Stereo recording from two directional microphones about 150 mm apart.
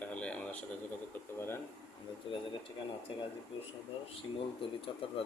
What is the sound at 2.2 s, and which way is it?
Speech, 35° left (ahead or behind).